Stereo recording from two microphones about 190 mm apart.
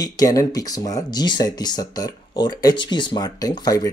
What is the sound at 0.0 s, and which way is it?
Speech, 20° left (ahead or behind).